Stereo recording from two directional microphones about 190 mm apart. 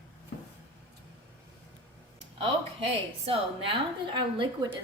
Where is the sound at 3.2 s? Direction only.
25° right (ahead or behind).